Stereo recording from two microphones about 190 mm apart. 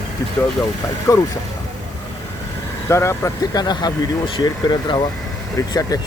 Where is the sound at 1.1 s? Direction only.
15° left (ahead or behind).